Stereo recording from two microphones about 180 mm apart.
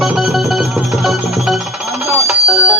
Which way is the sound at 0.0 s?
5° right (ahead or behind).